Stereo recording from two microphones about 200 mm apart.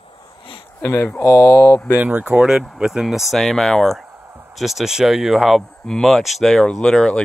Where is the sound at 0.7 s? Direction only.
10° left (ahead or behind).